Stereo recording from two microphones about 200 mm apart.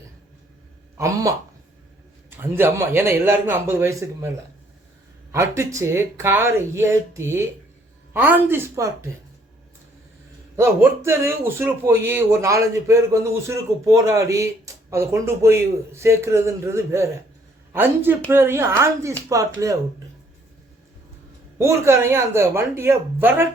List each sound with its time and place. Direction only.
0.9 s a man's voice: 15° right (ahead or behind)
2.4 s a man's voice: 10° right (ahead or behind)
5.3 s a man's voice: 15° right (ahead or behind)
10.6 s a man's voice: 10° right (ahead or behind)
21.6 s a man's voice: 15° right (ahead or behind)